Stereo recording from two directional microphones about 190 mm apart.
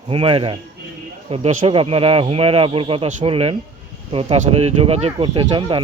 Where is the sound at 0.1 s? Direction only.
30° right (ahead or behind).